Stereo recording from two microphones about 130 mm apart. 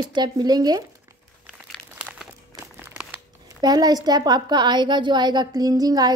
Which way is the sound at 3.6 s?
30° right (ahead or behind).